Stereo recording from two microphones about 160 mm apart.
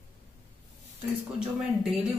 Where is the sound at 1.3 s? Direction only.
5° right (ahead or behind).